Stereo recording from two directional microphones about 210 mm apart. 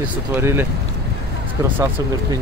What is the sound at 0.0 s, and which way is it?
Speech, 10° right (ahead or behind).